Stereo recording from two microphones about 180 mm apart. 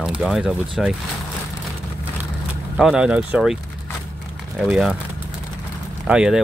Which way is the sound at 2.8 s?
5° right (ahead or behind).